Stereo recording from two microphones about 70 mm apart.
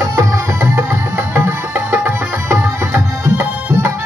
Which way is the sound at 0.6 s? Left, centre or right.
Right.